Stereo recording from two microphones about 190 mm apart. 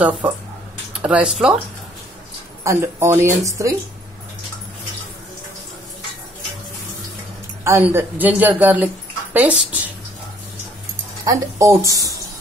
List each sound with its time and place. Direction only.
1.0 s speech: 5° right (ahead or behind)
2.6 s speech: 15° right (ahead or behind)
7.6 s speech: 10° right (ahead or behind)
11.2 s speech: 15° right (ahead or behind)